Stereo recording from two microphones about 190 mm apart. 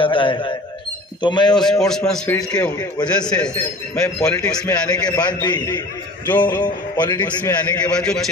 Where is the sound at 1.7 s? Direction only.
5° left (ahead or behind).